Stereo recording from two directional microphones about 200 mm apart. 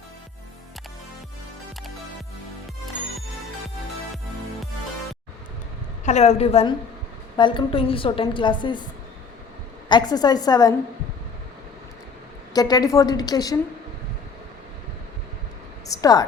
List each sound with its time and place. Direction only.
6.1 s a woman's voice: 35° left (ahead or behind)
9.9 s a woman's voice: 20° left (ahead or behind)
12.5 s a woman's voice: 20° left (ahead or behind)
16.0 s a woman's voice: 20° left (ahead or behind)